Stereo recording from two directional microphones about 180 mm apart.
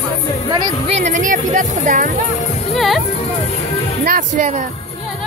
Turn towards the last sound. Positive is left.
turn(degrees=-40)  # may be behind; listen again after turning